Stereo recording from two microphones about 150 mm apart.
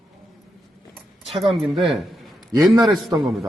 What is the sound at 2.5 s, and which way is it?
Speech, 20° right (ahead or behind).